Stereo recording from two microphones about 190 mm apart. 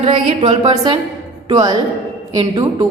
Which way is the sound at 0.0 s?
30° right (ahead or behind).